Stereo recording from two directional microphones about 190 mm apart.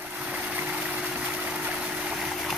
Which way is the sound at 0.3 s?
5° right (ahead or behind).